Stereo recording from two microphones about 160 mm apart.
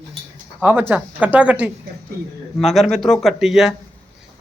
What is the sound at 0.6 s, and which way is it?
A man's voice, 10° right (ahead or behind).